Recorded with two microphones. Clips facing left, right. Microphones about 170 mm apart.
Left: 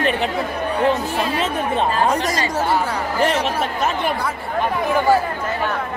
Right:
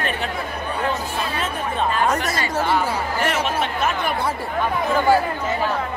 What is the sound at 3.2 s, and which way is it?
Speech, 35° left (ahead or behind).